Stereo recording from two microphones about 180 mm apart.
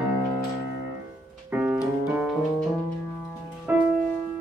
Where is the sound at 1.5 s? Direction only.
5° right (ahead or behind).